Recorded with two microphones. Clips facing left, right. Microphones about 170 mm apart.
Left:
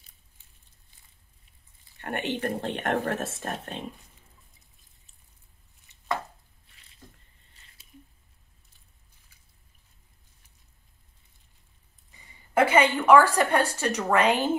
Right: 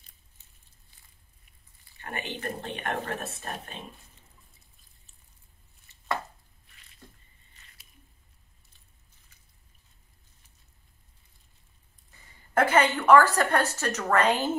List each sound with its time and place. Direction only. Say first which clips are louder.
2.0 s speech: left 6 dB; 70° left (ahead or behind)
3.4 s speech: left 4 dB; 65° left (ahead or behind)
12.5 s a woman's voice: left 2 dB; 10° left (ahead or behind)